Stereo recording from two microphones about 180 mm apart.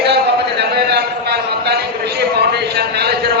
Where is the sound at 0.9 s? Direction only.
65° right (ahead or behind).